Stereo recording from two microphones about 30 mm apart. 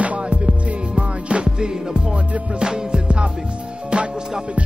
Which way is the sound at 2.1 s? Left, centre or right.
Right.